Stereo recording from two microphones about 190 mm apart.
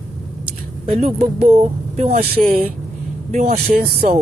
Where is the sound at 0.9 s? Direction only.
45° right (ahead or behind).